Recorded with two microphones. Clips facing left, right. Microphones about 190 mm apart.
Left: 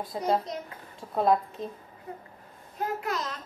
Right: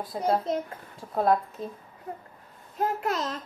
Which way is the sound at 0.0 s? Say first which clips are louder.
Right 1 dB; centre (ahead or behind).